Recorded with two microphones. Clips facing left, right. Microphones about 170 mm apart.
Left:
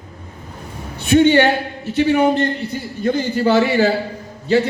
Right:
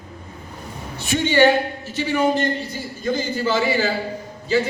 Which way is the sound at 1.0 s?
55° left (ahead or behind).